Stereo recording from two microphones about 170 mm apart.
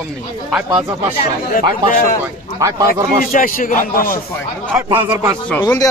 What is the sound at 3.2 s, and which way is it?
Speech, 55° left (ahead or behind).